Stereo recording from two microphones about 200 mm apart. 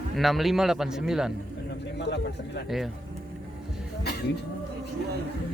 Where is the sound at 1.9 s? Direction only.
60° left (ahead or behind).